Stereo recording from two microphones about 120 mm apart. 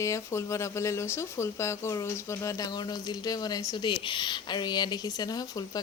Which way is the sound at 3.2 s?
35° left (ahead or behind).